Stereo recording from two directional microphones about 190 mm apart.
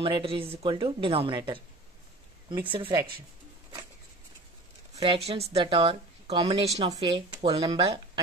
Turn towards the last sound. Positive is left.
turn(degrees=-30)  # may be behind; listen again after turning